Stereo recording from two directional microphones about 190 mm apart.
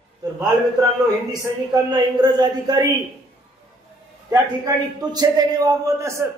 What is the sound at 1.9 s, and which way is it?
Speech, 20° right (ahead or behind).